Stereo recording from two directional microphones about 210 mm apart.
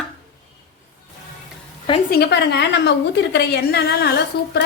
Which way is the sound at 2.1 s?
50° left (ahead or behind).